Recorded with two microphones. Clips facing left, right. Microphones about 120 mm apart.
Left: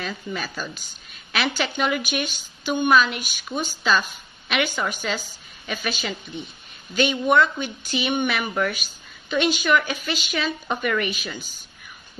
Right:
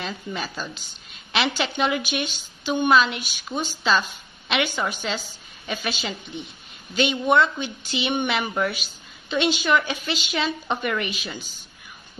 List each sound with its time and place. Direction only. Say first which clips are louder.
0.0 s a woman's voice: even; 25° right (ahead or behind)